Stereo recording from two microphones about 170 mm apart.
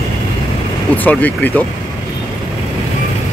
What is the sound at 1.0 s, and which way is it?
Speech, 10° left (ahead or behind).